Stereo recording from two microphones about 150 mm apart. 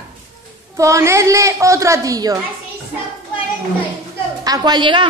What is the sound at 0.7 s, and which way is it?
A woman's voice, 20° right (ahead or behind).